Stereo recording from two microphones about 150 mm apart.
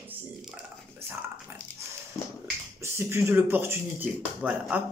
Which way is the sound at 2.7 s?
15° right (ahead or behind).